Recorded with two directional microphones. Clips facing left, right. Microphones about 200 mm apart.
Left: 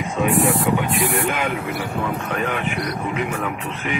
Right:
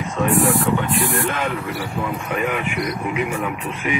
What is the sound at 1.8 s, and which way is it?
Speech, 10° right (ahead or behind).